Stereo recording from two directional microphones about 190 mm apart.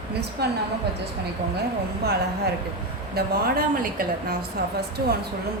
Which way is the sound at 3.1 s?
50° right (ahead or behind).